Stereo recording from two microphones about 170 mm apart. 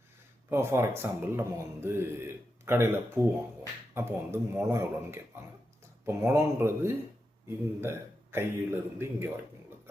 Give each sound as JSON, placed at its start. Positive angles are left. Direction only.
{"t": 0.5, "sound": "a man's voice", "side_deg": -15}